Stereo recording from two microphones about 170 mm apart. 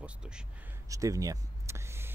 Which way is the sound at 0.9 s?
20° right (ahead or behind).